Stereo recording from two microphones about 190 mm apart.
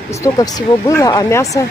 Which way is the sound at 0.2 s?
20° left (ahead or behind).